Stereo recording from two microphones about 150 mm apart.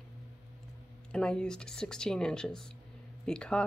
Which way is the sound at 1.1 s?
5° left (ahead or behind).